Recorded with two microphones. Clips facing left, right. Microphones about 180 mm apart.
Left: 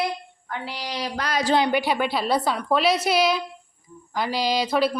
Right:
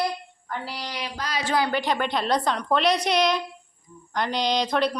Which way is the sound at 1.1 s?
65° left (ahead or behind).